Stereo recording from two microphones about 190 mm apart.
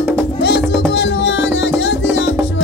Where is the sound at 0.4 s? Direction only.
60° left (ahead or behind).